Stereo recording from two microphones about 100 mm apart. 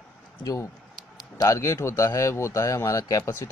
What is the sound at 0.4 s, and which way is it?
Speech, 35° left (ahead or behind).